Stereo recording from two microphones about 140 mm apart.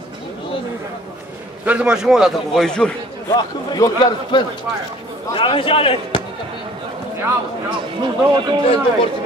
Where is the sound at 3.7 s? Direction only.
30° left (ahead or behind).